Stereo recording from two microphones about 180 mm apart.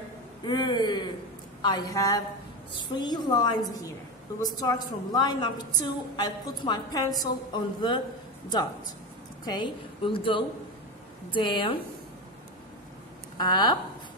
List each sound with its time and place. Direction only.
0.5 s a woman's voice: 25° left (ahead or behind)
9.5 s a woman's voice: 25° left (ahead or behind)
13.4 s a woman's voice: 25° left (ahead or behind)